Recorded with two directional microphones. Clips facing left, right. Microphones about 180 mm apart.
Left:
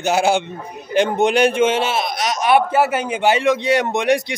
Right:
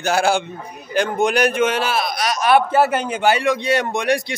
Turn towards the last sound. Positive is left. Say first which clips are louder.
# left 2 dB
turn(degrees=20)  # may be behind; listen again after turning